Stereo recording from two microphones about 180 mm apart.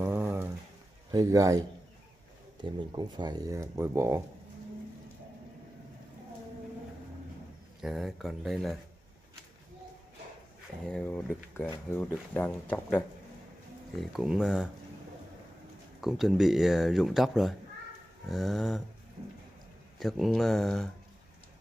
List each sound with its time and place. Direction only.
0.0 s a sound: 10° right (ahead or behind)
1.1 s speech: 20° right (ahead or behind)
2.6 s speech: 25° right (ahead or behind)
7.8 s speech: centre (ahead or behind)
10.9 s speech: 5° left (ahead or behind)
14.1 s speech: 5° right (ahead or behind)
16.0 s speech: centre (ahead or behind)
20.0 s speech: centre (ahead or behind)